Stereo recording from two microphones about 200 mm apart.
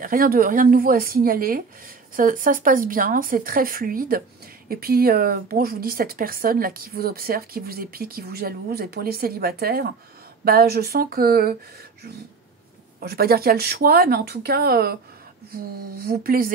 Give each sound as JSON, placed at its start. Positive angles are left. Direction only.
{"t": 0.0, "sound": "speech", "side_deg": -45}
{"t": 13.0, "sound": "speech", "side_deg": -50}